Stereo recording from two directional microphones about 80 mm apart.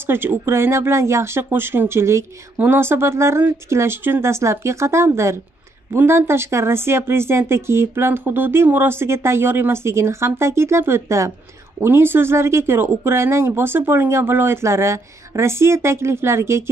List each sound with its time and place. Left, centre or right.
0.0 s speech: right